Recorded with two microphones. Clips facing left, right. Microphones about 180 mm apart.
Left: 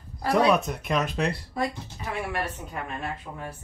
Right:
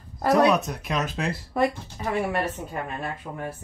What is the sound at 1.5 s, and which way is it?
Speech, 60° right (ahead or behind).